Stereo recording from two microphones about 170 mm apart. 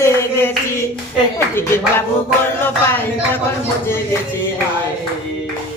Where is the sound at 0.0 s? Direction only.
15° left (ahead or behind).